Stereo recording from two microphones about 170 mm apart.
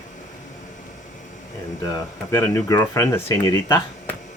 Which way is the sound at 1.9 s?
20° left (ahead or behind).